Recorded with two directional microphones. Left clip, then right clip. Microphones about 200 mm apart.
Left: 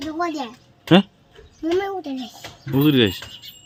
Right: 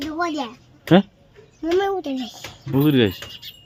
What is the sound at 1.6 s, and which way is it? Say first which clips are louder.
Speech: right 2 dB; 10° right (ahead or behind).